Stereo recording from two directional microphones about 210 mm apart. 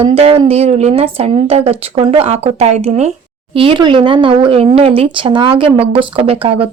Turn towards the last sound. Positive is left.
turn(degrees=-25)  # may be behind; listen again after turning